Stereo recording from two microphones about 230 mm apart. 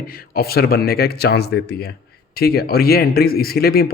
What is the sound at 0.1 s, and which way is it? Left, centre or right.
A man's voice, left.